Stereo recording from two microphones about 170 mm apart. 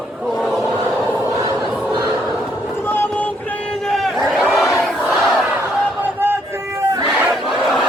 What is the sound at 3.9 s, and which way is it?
Crowd, centre (ahead or behind).